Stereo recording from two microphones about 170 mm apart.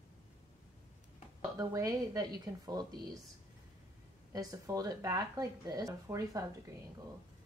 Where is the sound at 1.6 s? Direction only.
20° right (ahead or behind).